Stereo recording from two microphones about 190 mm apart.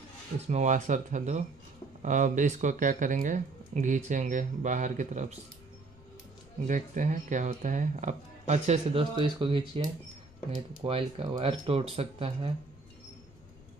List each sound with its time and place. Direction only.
0.5 s speech: 40° right (ahead or behind)
6.7 s speech: 40° right (ahead or behind)